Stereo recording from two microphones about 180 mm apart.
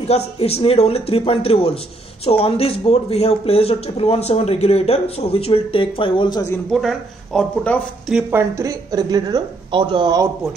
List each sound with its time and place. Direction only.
0.4 s speech: 35° left (ahead or behind)
6.7 s speech: centre (ahead or behind)
8.1 s speech: 10° right (ahead or behind); by 10.2 s 25° right (ahead or behind)